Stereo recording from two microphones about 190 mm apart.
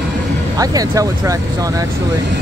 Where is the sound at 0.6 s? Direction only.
20° right (ahead or behind).